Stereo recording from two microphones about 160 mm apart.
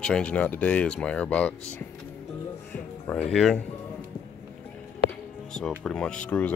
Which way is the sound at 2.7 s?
10° left (ahead or behind).